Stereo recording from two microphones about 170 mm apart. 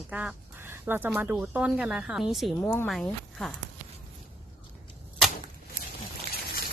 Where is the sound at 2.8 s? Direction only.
Centre (ahead or behind).